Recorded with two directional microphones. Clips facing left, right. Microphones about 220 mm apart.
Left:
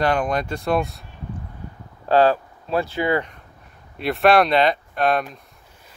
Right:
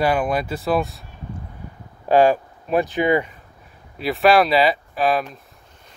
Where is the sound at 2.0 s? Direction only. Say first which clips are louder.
Right 1 dB; 15° right (ahead or behind).